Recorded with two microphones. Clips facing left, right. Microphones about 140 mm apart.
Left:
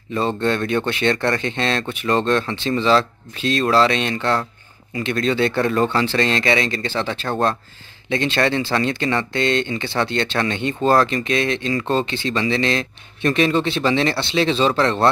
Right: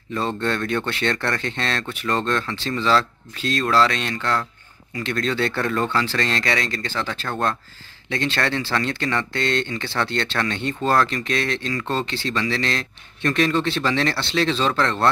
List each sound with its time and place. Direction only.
0.2 s speech: 15° left (ahead or behind)
4.9 s speech: 10° left (ahead or behind)